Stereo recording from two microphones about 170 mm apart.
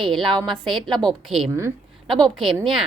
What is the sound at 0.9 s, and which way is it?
Speech, 25° right (ahead or behind).